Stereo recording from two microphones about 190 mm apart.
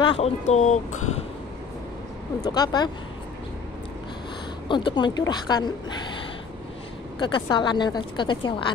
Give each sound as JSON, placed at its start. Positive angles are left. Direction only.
{"t": 0.0, "sound": "speech", "side_deg": 30}
{"t": 2.5, "sound": "a woman's voice", "side_deg": 20}
{"t": 4.6, "sound": "a woman's voice", "side_deg": 25}
{"t": 7.2, "sound": "a woman's voice", "side_deg": 25}